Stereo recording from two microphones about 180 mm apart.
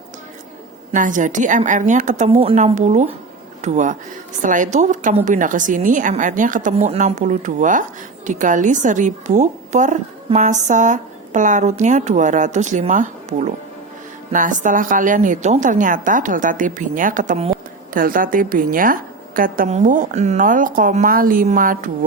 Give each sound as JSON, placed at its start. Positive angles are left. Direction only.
{"t": 0.9, "sound": "speech", "side_deg": -45}
{"t": 17.5, "sound": "speech", "side_deg": -50}